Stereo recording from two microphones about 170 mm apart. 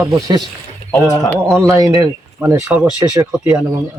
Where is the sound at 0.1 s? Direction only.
25° right (ahead or behind).